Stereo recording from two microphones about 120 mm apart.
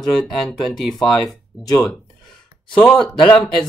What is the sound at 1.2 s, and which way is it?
Speech, 30° left (ahead or behind).